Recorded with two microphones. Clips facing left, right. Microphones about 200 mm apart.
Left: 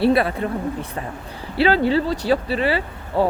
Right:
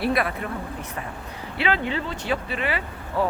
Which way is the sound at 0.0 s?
30° left (ahead or behind).